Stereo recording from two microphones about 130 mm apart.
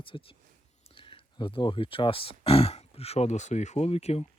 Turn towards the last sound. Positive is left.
turn(degrees=55)  # may be behind; listen again after turning